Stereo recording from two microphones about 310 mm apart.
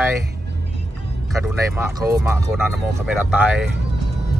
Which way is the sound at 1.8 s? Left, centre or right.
Centre.